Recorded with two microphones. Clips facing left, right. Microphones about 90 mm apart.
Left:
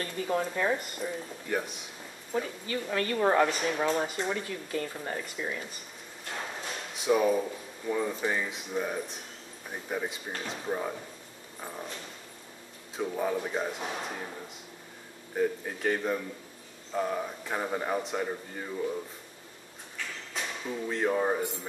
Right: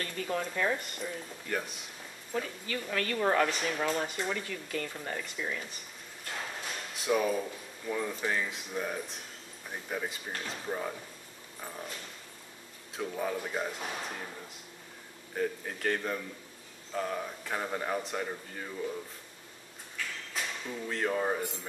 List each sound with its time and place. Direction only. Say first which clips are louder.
0.0 s a man's voice: left 4 dB; 20° left (ahead or behind)
2.3 s a man's voice: left 3 dB; 20° left (ahead or behind)
6.3 s a man's voice: left 2 dB; 5° left (ahead or behind)
12.9 s a man's voice: left 4 dB; 5° left (ahead or behind)
15.3 s a man's voice: left 4 dB; 10° left (ahead or behind)
20.3 s speech: left 3 dB; 10° left (ahead or behind)